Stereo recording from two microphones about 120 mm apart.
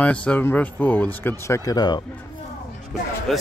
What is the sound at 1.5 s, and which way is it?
Speech, 30° left (ahead or behind).